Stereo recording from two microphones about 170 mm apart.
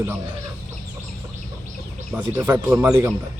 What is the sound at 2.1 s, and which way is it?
Speech, 10° right (ahead or behind).